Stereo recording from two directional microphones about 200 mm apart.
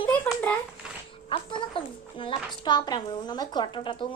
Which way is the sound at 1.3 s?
25° left (ahead or behind).